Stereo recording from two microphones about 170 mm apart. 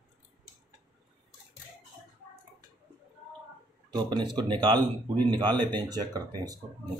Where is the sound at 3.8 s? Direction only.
25° right (ahead or behind).